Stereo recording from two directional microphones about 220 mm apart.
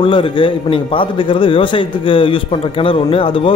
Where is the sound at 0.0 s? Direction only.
25° left (ahead or behind).